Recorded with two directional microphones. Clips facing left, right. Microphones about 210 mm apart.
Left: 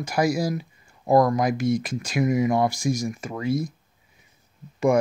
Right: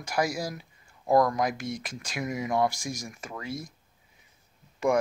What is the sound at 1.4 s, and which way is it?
Speech, 5° left (ahead or behind).